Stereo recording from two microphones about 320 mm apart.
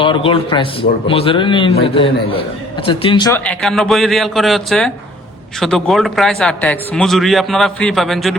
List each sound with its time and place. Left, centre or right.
0.0 s a man's voice: centre